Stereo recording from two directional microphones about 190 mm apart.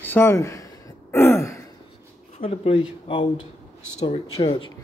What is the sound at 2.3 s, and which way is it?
Speech, 30° left (ahead or behind).